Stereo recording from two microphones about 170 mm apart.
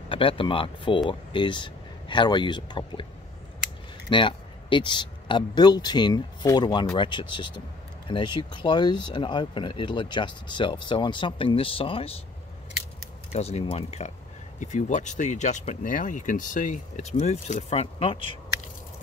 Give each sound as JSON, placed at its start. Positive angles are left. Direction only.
{"t": 0.1, "sound": "speech", "side_deg": 30}
{"t": 4.1, "sound": "speech", "side_deg": 30}
{"t": 13.3, "sound": "speech", "side_deg": 40}